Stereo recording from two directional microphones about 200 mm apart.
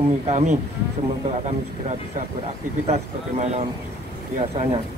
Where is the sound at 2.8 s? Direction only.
30° right (ahead or behind).